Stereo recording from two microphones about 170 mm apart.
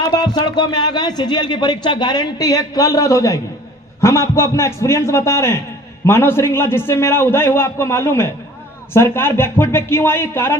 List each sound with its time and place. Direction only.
0.2 s a man's voice: 25° left (ahead or behind)